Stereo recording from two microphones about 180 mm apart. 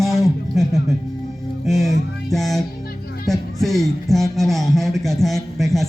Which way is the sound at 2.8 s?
60° left (ahead or behind).